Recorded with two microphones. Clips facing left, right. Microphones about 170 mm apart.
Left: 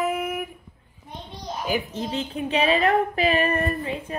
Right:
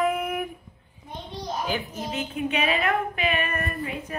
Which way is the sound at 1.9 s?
30° left (ahead or behind).